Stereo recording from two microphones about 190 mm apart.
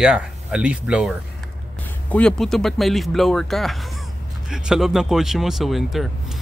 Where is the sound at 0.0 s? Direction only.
5° right (ahead or behind).